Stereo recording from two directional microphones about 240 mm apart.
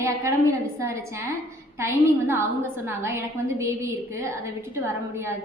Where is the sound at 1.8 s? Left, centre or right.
Centre.